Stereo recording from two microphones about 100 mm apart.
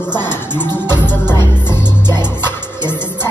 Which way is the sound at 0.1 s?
20° left (ahead or behind).